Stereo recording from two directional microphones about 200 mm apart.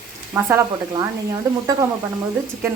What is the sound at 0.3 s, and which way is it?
Speech, 15° right (ahead or behind).